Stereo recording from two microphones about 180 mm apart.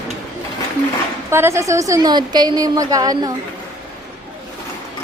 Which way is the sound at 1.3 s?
15° right (ahead or behind).